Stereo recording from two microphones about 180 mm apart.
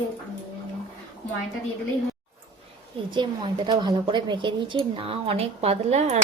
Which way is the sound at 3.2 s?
25° right (ahead or behind).